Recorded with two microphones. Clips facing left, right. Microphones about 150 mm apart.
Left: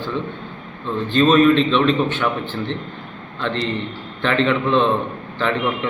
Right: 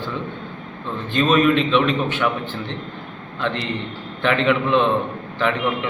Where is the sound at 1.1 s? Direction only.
10° right (ahead or behind).